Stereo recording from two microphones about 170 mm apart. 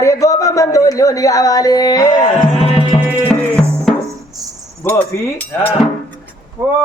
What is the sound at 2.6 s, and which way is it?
Music, 35° left (ahead or behind).